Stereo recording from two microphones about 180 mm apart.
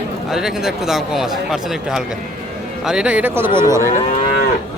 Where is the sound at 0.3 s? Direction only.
5° right (ahead or behind).